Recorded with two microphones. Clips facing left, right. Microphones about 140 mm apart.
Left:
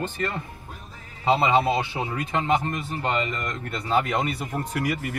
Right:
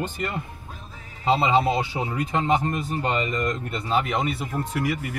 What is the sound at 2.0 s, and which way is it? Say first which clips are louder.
Speech: right 1 dB; 20° right (ahead or behind).